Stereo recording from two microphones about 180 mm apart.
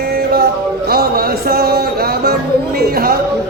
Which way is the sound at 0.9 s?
60° right (ahead or behind).